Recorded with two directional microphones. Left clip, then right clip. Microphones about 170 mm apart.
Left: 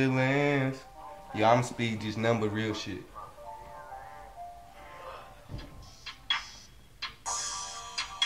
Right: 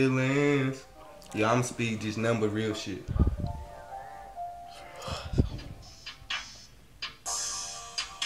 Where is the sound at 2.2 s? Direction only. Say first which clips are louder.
Even; 20° left (ahead or behind).